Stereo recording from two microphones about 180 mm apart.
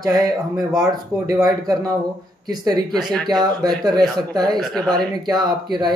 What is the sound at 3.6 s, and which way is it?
Speech, 20° right (ahead or behind).